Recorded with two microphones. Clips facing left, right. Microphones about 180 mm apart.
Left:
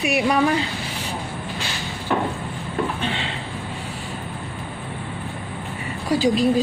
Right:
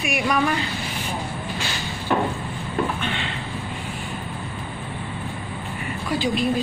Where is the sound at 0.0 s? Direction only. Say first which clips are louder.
Left 3 dB; 30° left (ahead or behind).